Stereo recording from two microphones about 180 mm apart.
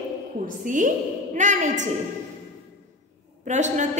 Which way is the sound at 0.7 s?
45° right (ahead or behind).